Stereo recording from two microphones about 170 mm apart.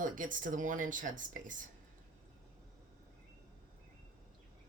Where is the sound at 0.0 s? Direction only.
50° right (ahead or behind).